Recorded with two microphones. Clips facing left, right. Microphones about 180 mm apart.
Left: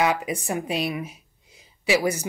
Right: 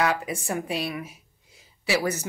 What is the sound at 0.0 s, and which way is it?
Speech, 20° left (ahead or behind).